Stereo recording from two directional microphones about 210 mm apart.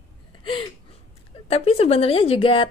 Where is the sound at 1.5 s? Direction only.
30° left (ahead or behind).